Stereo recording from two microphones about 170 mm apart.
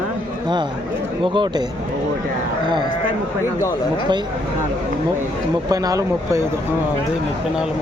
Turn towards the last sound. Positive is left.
turn(degrees=-20)  # may be behind; listen again after turning